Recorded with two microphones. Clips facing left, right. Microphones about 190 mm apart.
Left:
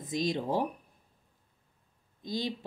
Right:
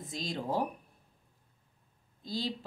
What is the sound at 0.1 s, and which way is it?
Speech, 20° left (ahead or behind).